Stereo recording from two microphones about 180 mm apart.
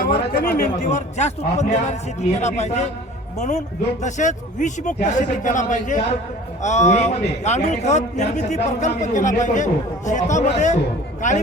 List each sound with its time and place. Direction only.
0.0 s speech: 60° left (ahead or behind)
0.9 s a man's voice: 40° left (ahead or behind)